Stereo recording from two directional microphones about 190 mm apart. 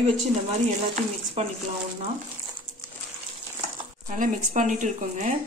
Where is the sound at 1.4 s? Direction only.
35° right (ahead or behind).